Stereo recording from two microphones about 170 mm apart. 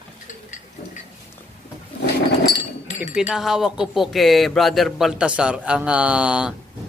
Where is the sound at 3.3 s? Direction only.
Centre (ahead or behind).